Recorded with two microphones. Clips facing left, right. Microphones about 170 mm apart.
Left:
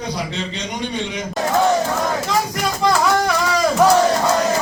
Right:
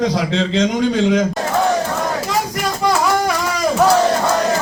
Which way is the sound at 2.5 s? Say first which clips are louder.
Right 1 dB; 5° right (ahead or behind).